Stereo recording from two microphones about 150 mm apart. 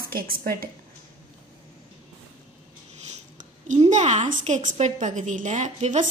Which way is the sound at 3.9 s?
55° right (ahead or behind).